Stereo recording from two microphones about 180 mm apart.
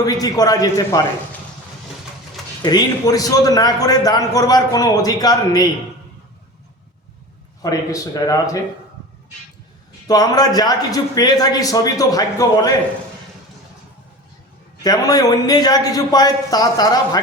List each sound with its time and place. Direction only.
0.0 s a man's voice: 20° left (ahead or behind)
2.6 s a man's voice: 20° left (ahead or behind)
7.6 s a man's voice: 20° left (ahead or behind)
10.1 s a man's voice: 20° left (ahead or behind)
14.8 s a man's voice: 20° left (ahead or behind)